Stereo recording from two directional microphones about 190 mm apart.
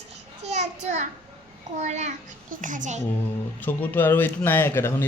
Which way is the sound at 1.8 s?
40° right (ahead or behind).